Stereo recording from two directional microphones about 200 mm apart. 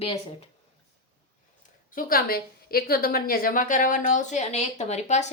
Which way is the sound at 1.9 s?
45° left (ahead or behind).